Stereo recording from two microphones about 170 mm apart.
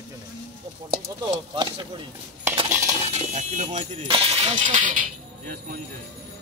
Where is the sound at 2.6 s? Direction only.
20° right (ahead or behind).